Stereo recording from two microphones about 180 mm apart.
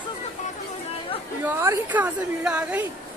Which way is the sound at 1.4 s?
15° right (ahead or behind).